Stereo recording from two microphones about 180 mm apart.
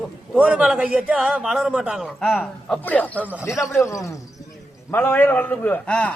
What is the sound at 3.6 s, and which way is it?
A man's voice, 15° left (ahead or behind).